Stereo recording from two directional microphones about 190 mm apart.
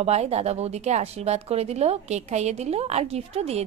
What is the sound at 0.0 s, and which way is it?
A woman's voice, 35° right (ahead or behind).